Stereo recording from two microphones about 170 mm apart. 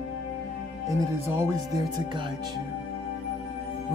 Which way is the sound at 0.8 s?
15° right (ahead or behind).